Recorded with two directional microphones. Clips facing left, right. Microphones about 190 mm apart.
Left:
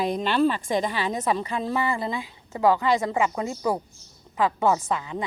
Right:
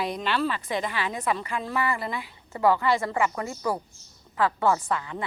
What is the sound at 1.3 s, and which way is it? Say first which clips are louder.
A woman's voice: left 3 dB; 20° left (ahead or behind).